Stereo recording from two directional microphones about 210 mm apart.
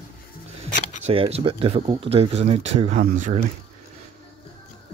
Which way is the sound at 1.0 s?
30° right (ahead or behind).